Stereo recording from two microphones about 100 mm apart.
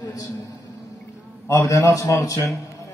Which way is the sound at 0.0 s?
35° left (ahead or behind).